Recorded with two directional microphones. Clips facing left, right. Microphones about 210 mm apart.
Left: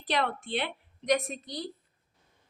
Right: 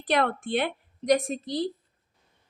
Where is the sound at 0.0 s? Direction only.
50° right (ahead or behind).